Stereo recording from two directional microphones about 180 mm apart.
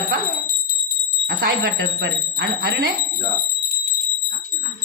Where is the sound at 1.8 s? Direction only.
70° right (ahead or behind).